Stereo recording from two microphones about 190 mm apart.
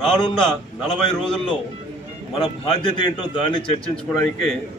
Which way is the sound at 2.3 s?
30° left (ahead or behind).